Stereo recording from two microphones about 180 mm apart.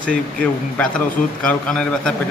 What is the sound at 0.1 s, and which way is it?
A man's voice, 5° left (ahead or behind).